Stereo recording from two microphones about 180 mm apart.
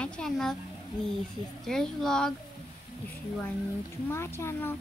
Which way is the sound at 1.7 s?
Centre (ahead or behind).